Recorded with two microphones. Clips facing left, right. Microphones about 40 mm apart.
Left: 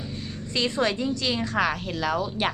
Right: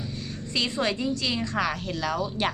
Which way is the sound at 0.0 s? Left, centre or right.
Centre.